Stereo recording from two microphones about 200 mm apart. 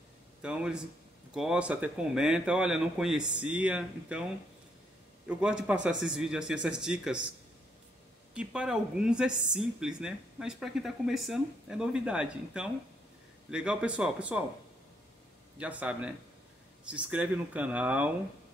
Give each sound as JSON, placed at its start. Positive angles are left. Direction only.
{"t": 0.4, "sound": "speech", "side_deg": -5}
{"t": 5.3, "sound": "speech", "side_deg": -5}
{"t": 8.4, "sound": "speech", "side_deg": -5}
{"t": 15.5, "sound": "speech", "side_deg": -5}